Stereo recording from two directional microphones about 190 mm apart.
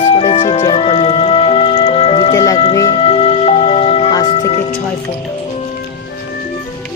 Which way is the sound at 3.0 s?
30° left (ahead or behind).